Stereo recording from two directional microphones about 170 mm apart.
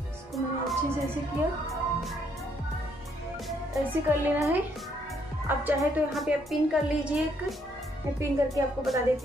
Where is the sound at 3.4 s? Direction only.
Centre (ahead or behind).